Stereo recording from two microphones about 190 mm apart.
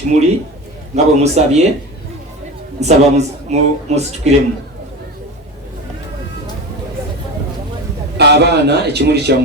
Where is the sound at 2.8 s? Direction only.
35° right (ahead or behind).